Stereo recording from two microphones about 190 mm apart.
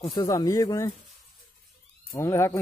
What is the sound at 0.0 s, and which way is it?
Speech, 20° left (ahead or behind).